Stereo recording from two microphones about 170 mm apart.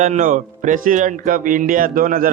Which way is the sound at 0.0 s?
45° right (ahead or behind).